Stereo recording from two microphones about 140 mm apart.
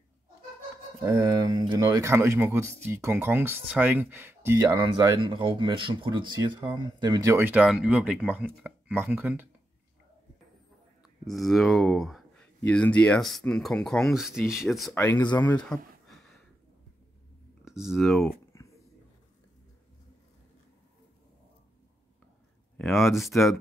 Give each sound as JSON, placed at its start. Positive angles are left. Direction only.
{"t": 1.0, "sound": "speech", "side_deg": -25}
{"t": 7.3, "sound": "speech", "side_deg": -15}
{"t": 11.2, "sound": "speech", "side_deg": 0}
{"t": 15.0, "sound": "speech", "side_deg": 15}
{"t": 15.7, "sound": "speech", "side_deg": 5}
{"t": 16.1, "sound": "a sound", "side_deg": 0}
{"t": 17.6, "sound": "speech", "side_deg": -5}
{"t": 18.5, "sound": "a sound", "side_deg": 20}
{"t": 22.8, "sound": "speech", "side_deg": 0}